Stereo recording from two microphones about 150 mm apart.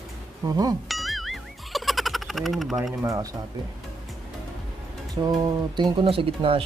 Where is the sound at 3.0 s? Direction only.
20° right (ahead or behind).